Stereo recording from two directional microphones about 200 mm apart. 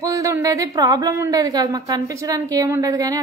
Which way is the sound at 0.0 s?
15° right (ahead or behind).